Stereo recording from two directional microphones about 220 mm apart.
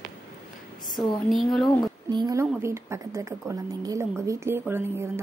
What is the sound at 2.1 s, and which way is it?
A woman's voice, 20° right (ahead or behind).